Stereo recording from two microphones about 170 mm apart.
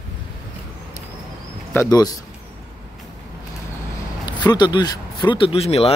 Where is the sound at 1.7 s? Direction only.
20° left (ahead or behind).